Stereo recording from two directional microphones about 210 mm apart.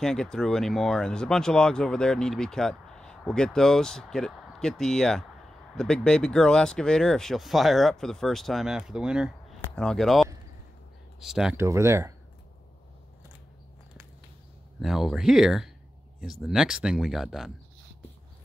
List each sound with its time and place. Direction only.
0.0 s speech: 5° left (ahead or behind); by 12.1 s 15° right (ahead or behind)
14.8 s speech: centre (ahead or behind)